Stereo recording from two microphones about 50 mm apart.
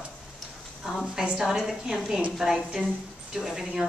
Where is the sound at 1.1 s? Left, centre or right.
Centre.